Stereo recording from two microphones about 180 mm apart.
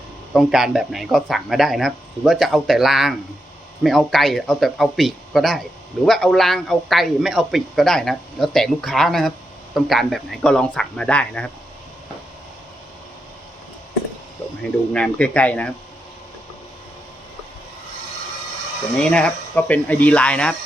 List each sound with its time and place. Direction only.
0.3 s a man's voice: centre (ahead or behind)
14.9 s speech: 5° left (ahead or behind)
18.9 s speech: 5° left (ahead or behind)